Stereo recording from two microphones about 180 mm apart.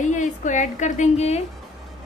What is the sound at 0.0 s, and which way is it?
A woman's voice, 45° left (ahead or behind).